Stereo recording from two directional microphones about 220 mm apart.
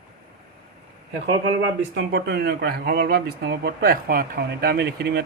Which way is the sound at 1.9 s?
50° right (ahead or behind).